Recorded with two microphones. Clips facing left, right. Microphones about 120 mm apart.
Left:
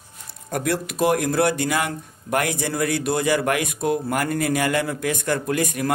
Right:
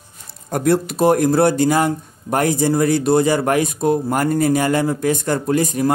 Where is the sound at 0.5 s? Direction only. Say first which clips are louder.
Right 7 dB; 35° right (ahead or behind).